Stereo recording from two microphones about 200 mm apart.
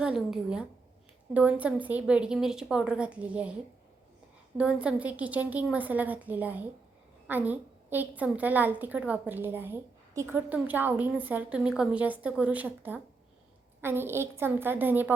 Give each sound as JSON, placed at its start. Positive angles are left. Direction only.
{"t": 0.0, "sound": "a woman's voice", "side_deg": -5}
{"t": 4.5, "sound": "a woman's voice", "side_deg": -5}